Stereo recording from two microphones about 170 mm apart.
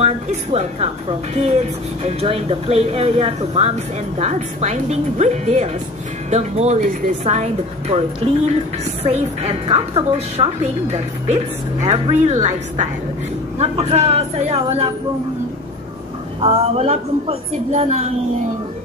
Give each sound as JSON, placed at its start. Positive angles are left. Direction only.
{"t": 0.0, "sound": "speech", "side_deg": -40}
{"t": 2.0, "sound": "a woman's voice", "side_deg": -35}
{"t": 16.3, "sound": "a woman's voice", "side_deg": -35}